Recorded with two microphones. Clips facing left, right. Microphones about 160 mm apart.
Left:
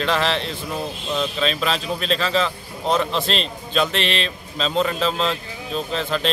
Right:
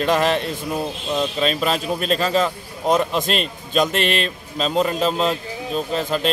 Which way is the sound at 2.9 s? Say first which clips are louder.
Right 2 dB; 10° right (ahead or behind).